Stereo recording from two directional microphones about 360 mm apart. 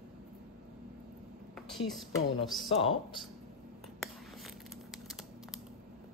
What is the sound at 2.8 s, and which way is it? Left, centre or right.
Speech, centre.